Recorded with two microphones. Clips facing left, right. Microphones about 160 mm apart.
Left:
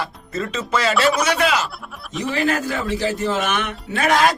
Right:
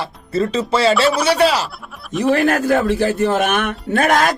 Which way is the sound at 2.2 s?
55° right (ahead or behind).